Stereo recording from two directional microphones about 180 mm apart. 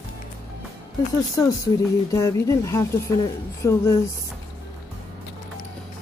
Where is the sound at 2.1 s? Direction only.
15° left (ahead or behind).